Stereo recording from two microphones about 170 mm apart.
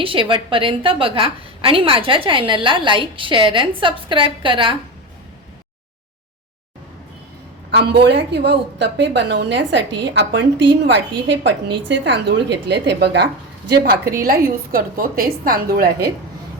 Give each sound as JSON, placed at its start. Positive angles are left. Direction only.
{"t": 0.0, "sound": "a woman's voice", "side_deg": -30}
{"t": 7.8, "sound": "a woman's voice", "side_deg": -80}
{"t": 13.7, "sound": "a woman's voice", "side_deg": -65}